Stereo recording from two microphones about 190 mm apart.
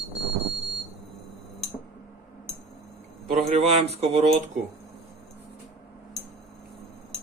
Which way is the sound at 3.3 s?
40° right (ahead or behind).